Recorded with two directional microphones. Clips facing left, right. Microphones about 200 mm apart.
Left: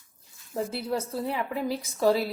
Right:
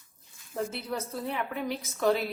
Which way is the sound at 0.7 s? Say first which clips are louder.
Left 5 dB; 30° left (ahead or behind).